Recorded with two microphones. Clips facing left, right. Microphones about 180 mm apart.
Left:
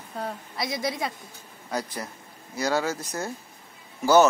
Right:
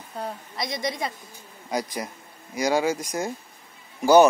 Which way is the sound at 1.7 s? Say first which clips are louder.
Right 3 dB; 10° right (ahead or behind).